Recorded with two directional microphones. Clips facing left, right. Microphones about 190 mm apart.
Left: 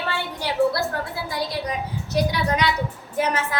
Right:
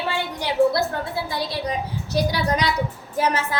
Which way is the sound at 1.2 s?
30° right (ahead or behind).